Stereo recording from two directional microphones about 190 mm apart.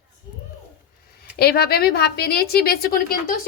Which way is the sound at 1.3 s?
55° left (ahead or behind).